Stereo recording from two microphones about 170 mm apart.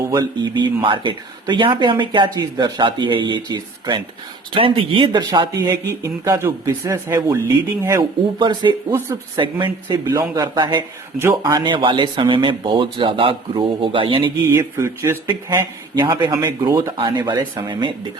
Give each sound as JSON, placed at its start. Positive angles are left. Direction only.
{"t": 0.1, "sound": "speech", "side_deg": -25}
{"t": 8.9, "sound": "speech", "side_deg": -15}
{"t": 14.5, "sound": "speech", "side_deg": -15}
{"t": 16.0, "sound": "speech", "side_deg": -25}